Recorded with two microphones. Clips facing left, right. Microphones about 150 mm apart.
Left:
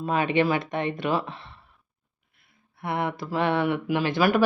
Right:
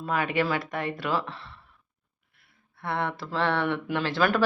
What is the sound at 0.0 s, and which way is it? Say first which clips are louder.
A woman's voice: left 4 dB; 20° left (ahead or behind).